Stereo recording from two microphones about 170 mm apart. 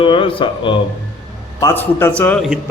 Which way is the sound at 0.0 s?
30° left (ahead or behind).